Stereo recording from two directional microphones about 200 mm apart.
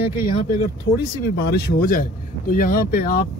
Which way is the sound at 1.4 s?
50° left (ahead or behind).